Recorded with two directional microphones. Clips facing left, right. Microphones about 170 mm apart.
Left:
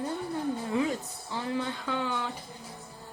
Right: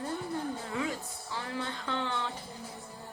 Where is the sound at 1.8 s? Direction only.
10° left (ahead or behind).